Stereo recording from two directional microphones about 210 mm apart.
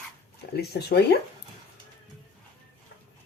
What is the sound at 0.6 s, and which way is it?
Speech, 50° left (ahead or behind).